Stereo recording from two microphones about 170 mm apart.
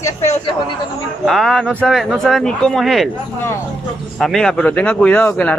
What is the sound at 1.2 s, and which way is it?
Speech, centre (ahead or behind).